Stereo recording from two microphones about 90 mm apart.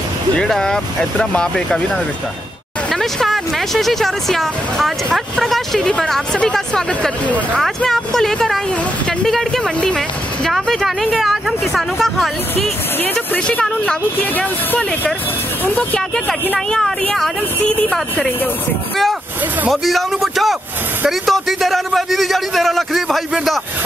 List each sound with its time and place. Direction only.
0.4 s speech: 5° left (ahead or behind)
2.9 s speech: 5° left (ahead or behind)
13.0 s speech: 15° left (ahead or behind)
16.5 s speech: 5° left (ahead or behind)
19.7 s speech: centre (ahead or behind)